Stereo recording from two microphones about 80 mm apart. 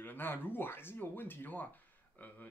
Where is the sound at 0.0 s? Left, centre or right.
Left.